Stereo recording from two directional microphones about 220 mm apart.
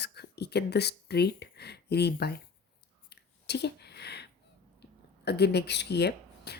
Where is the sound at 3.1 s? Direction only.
50° left (ahead or behind).